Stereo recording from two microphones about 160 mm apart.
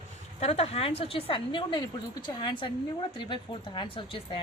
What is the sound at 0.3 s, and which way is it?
A woman's voice, 40° left (ahead or behind).